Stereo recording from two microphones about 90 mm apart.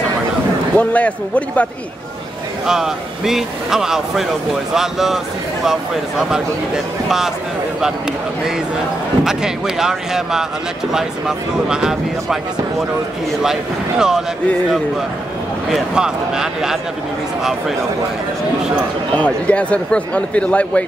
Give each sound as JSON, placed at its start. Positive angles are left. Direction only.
{"t": 0.7, "sound": "a man's voice", "side_deg": 15}
{"t": 2.6, "sound": "speech", "side_deg": -5}
{"t": 9.2, "sound": "speech", "side_deg": -5}
{"t": 13.4, "sound": "speech", "side_deg": -5}
{"t": 15.7, "sound": "speech", "side_deg": -5}
{"t": 19.1, "sound": "a man's voice", "side_deg": 15}